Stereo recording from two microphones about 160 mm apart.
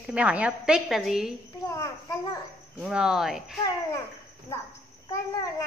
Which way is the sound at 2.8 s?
5° right (ahead or behind).